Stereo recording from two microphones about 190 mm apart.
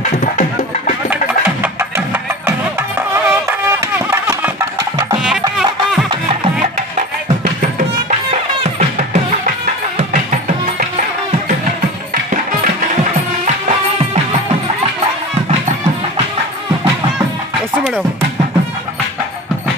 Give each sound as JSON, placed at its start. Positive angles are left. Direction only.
{"t": 0.2, "sound": "music", "side_deg": 40}
{"t": 1.1, "sound": "music", "side_deg": -10}
{"t": 5.6, "sound": "music", "side_deg": -5}
{"t": 8.6, "sound": "music", "side_deg": -40}